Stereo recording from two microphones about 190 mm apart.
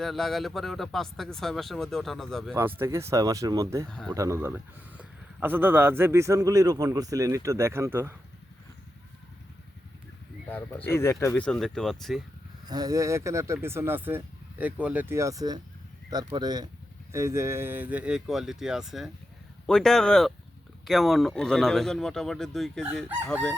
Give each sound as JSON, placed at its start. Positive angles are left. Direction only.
{"t": 0.0, "sound": "speech", "side_deg": 0}
{"t": 2.6, "sound": "speech", "side_deg": -15}
{"t": 3.8, "sound": "speech", "side_deg": 5}
{"t": 4.1, "sound": "speech", "side_deg": -15}
{"t": 10.5, "sound": "speech", "side_deg": 10}
{"t": 11.4, "sound": "speech", "side_deg": 5}
{"t": 12.6, "sound": "speech", "side_deg": -20}
{"t": 23.3, "sound": "speech", "side_deg": 5}